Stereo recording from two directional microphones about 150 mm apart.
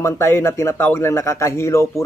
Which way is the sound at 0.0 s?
20° left (ahead or behind).